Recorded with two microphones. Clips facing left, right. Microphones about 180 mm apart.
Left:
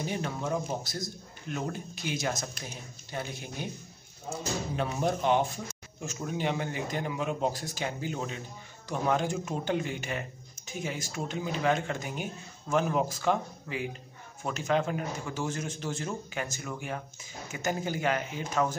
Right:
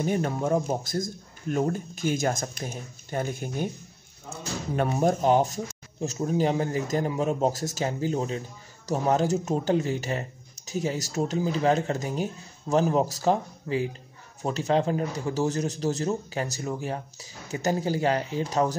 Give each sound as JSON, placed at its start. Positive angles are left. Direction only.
{"t": 0.0, "sound": "speech", "side_deg": -50}
{"t": 4.7, "sound": "speech", "side_deg": -45}